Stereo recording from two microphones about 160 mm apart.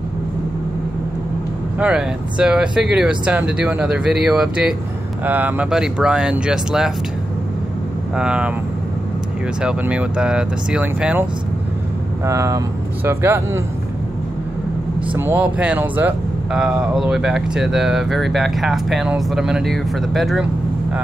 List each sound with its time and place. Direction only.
1.8 s speech: 5° right (ahead or behind)
8.2 s speech: 5° right (ahead or behind)
9.6 s speech: 5° right (ahead or behind)
12.3 s speech: 20° right (ahead or behind)
15.1 s speech: 10° right (ahead or behind)